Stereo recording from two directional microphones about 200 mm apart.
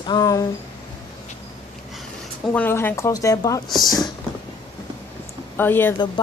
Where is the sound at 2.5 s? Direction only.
10° left (ahead or behind).